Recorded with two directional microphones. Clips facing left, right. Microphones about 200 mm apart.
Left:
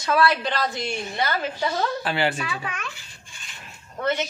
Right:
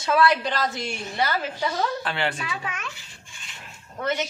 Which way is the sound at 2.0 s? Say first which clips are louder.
Left 3 dB; 5° left (ahead or behind).